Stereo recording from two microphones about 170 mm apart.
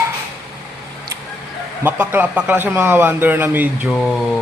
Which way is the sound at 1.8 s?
10° right (ahead or behind).